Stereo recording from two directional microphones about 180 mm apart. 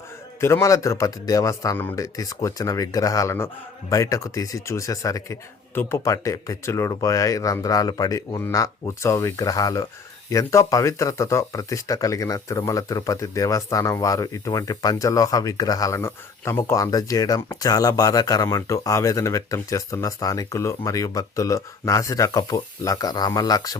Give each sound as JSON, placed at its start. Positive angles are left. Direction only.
{"t": 0.3, "sound": "a man's voice", "side_deg": 15}